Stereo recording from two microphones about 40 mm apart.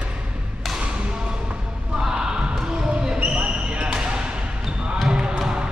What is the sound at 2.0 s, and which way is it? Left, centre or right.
Basketball bounce, centre.